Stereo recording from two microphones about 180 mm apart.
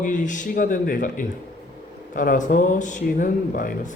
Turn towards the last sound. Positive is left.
turn(degrees=50)  # may be behind; listen again after turning